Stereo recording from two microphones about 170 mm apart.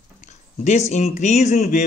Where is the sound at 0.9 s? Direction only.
40° left (ahead or behind).